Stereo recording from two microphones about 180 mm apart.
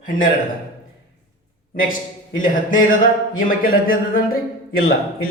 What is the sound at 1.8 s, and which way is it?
A man's voice, 45° left (ahead or behind).